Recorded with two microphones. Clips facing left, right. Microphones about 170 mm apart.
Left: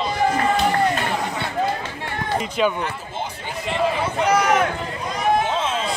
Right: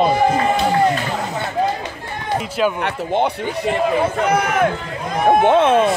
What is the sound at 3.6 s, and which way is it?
Speech, 50° right (ahead or behind).